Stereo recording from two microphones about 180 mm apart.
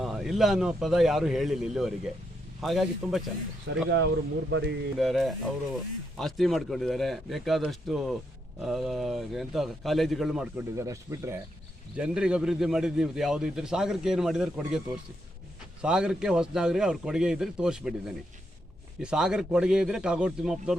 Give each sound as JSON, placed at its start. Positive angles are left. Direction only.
{"t": 0.0, "sound": "speech", "side_deg": 0}
{"t": 4.4, "sound": "speech", "side_deg": -75}
{"t": 4.9, "sound": "speech", "side_deg": 0}
{"t": 10.6, "sound": "speech", "side_deg": -15}
{"t": 11.9, "sound": "speech", "side_deg": -5}
{"t": 15.8, "sound": "speech", "side_deg": -5}